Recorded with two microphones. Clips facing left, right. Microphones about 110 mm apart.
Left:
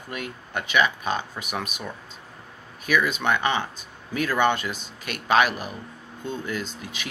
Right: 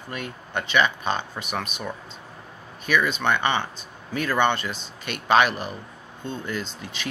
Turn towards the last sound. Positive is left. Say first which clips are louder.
# right 1 dB
turn(degrees=10)  # may be behind; listen again after turning